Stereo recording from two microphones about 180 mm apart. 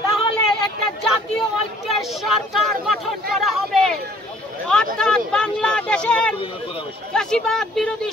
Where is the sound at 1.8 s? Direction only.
Centre (ahead or behind).